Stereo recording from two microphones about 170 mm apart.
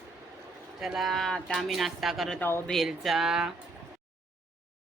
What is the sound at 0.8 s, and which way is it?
Speech, centre (ahead or behind).